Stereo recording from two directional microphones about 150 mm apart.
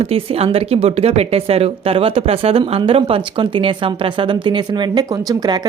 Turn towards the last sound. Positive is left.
turn(degrees=-25)  # may be behind; listen again after turning